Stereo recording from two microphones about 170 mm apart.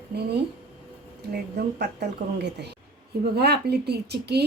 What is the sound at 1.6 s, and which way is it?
A woman's voice, 75° right (ahead or behind).